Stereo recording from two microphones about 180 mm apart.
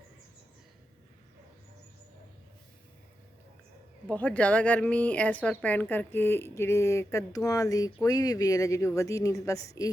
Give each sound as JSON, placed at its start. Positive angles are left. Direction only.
{"t": 4.1, "sound": "speech", "side_deg": 10}